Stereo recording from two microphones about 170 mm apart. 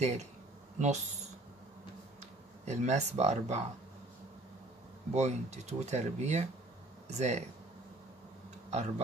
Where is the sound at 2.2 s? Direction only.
45° right (ahead or behind).